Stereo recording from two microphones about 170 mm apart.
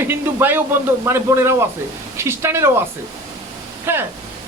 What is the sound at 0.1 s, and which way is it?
A man's voice, 10° right (ahead or behind).